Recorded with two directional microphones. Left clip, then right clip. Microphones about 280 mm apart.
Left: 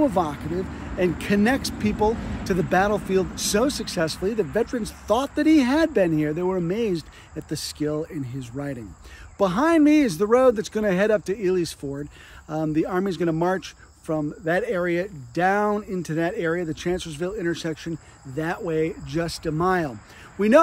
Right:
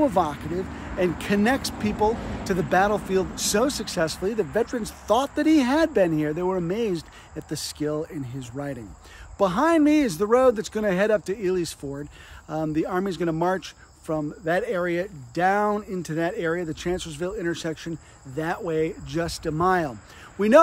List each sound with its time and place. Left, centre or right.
0.0 s speech: centre
2.1 s vehicle: right
2.7 s speech: centre